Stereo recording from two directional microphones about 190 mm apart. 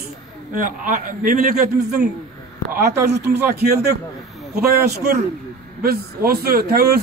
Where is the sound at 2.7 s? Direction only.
55° right (ahead or behind).